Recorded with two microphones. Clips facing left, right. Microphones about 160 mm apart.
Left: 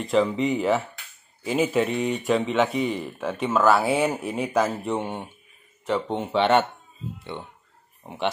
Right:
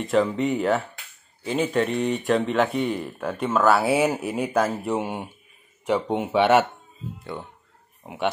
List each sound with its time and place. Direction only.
0.0 s speech: centre (ahead or behind)
8.0 s speech: 5° right (ahead or behind)